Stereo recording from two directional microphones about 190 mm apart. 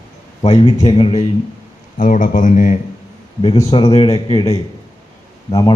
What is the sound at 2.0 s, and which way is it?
Speech, 45° left (ahead or behind).